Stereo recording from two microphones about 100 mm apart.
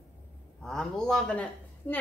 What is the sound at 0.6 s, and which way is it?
Speech, 5° left (ahead or behind).